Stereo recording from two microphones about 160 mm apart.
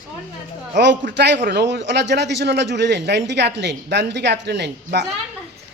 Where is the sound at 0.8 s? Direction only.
90° right.